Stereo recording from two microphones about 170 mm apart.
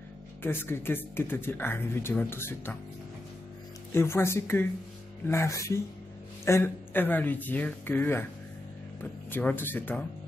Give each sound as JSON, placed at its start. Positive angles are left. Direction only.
{"t": 0.4, "sound": "speech", "side_deg": 15}
{"t": 3.9, "sound": "speech", "side_deg": 15}
{"t": 9.3, "sound": "speech", "side_deg": 10}